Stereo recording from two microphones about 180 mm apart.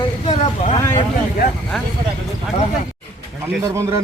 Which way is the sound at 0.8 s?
15° left (ahead or behind).